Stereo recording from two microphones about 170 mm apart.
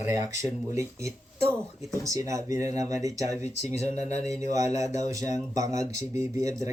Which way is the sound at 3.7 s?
40° left (ahead or behind).